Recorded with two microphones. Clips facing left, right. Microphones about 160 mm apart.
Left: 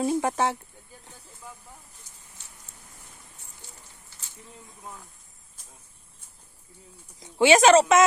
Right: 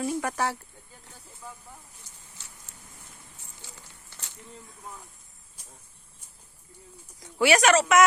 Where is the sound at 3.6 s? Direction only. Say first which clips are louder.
Right 3 dB; 90° right.